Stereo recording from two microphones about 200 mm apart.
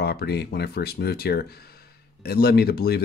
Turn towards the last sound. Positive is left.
turn(degrees=50)  # may be behind; listen again after turning